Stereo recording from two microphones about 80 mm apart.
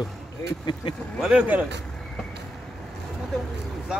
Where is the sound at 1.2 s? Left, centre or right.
Centre.